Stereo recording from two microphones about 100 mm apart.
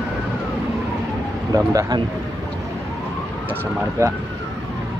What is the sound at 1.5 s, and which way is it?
Speech, 35° right (ahead or behind).